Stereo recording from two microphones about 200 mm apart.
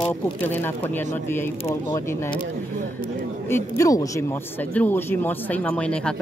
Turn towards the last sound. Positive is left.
turn(degrees=5)  # may be behind; listen again after turning